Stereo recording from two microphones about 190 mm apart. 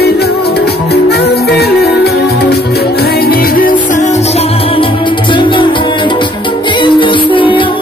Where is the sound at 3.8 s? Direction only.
40° left (ahead or behind).